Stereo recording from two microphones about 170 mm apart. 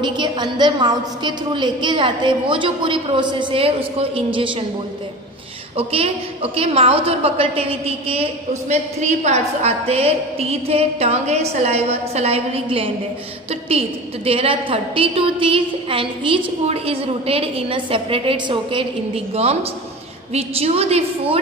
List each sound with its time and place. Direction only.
0.0 s a woman's voice: 25° right (ahead or behind)
5.8 s a woman's voice: 35° right (ahead or behind)